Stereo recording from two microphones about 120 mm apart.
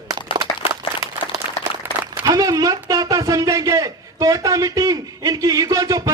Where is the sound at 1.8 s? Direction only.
15° right (ahead or behind).